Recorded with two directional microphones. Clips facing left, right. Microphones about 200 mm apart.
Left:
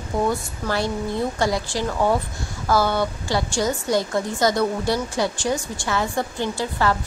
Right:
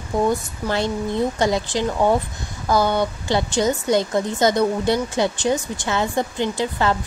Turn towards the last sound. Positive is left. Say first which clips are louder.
# right 2 dB
turn(degrees=-20)  # may be behind; listen again after turning